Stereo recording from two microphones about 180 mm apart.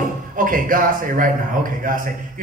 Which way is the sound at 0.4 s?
50° right (ahead or behind).